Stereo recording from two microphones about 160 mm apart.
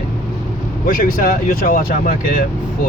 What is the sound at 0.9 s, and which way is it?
Speech, 60° left (ahead or behind).